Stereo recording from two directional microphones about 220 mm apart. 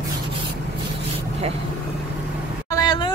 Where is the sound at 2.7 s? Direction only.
20° left (ahead or behind).